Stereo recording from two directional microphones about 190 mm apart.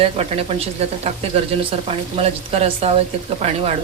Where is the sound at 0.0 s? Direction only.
30° right (ahead or behind).